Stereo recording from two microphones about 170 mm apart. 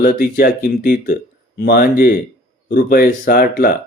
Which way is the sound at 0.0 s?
60° left (ahead or behind).